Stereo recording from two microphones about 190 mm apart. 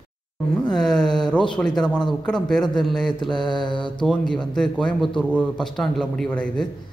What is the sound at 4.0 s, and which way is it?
A man's voice, 5° left (ahead or behind).